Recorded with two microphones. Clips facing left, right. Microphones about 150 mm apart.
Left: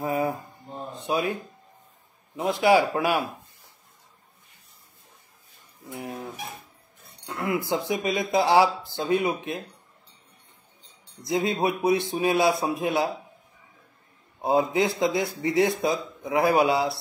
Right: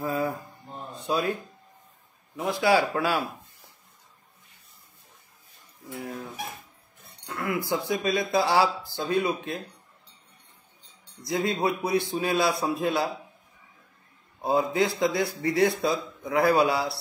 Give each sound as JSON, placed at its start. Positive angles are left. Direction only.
{"t": 0.0, "sound": "mantra", "side_deg": 20}
{"t": 1.0, "sound": "speech", "side_deg": 20}
{"t": 2.3, "sound": "a man's voice", "side_deg": 20}
{"t": 5.9, "sound": "a sound", "side_deg": 20}
{"t": 7.2, "sound": "speech", "side_deg": 25}
{"t": 11.2, "sound": "speech", "side_deg": 20}
{"t": 14.4, "sound": "a man's voice", "side_deg": 20}